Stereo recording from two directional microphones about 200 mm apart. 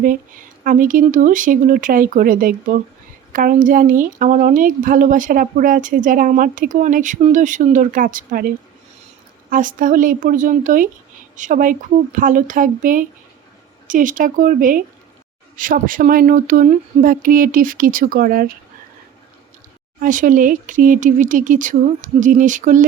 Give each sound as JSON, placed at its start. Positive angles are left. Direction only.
{"t": 0.0, "sound": "speech", "side_deg": -45}
{"t": 20.0, "sound": "speech", "side_deg": -40}